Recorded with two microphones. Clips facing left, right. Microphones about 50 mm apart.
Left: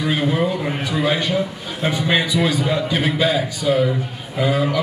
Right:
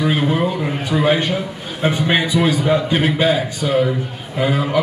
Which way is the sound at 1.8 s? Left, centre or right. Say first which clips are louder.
Right 2 dB; centre.